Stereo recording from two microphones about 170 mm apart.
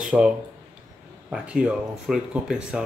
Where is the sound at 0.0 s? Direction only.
5° right (ahead or behind).